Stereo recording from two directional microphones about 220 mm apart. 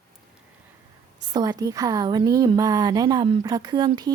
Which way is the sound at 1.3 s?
20° right (ahead or behind).